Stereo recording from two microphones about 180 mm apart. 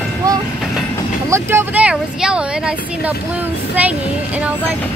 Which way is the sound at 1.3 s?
15° right (ahead or behind).